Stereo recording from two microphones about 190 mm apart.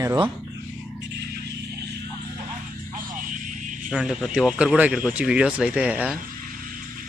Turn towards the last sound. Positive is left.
turn(degrees=-5)  # may be behind; listen again after turning